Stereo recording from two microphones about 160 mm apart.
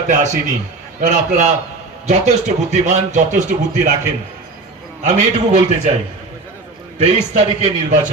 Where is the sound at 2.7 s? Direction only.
45° right (ahead or behind).